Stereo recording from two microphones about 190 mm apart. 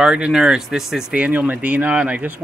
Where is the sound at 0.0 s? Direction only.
5° right (ahead or behind).